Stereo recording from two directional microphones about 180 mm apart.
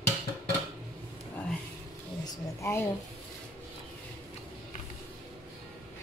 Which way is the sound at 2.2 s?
15° left (ahead or behind).